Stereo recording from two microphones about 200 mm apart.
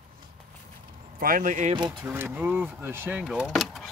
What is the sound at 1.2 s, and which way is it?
Speech, 45° right (ahead or behind).